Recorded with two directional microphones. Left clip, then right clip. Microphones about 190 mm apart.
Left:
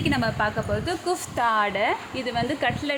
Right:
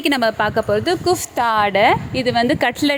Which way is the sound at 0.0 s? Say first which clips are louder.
Right 7 dB; 50° right (ahead or behind).